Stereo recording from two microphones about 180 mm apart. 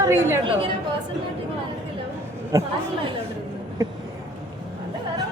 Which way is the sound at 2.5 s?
15° right (ahead or behind).